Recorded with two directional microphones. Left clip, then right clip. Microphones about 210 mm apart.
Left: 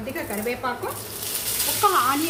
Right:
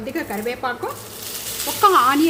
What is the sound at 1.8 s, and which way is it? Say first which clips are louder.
Speech: right 6 dB; 45° right (ahead or behind).